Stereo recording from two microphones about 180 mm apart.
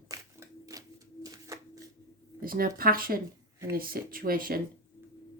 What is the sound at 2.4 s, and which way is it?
Speech, 55° right (ahead or behind).